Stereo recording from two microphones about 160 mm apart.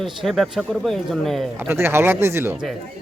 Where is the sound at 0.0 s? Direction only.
Centre (ahead or behind).